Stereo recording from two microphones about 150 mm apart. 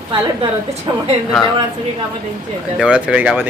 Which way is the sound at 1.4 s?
Centre (ahead or behind).